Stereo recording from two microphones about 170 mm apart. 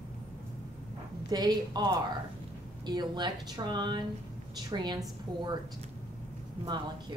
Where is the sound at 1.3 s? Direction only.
25° right (ahead or behind).